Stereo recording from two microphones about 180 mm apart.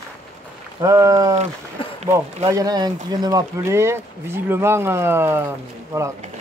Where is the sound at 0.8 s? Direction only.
20° right (ahead or behind).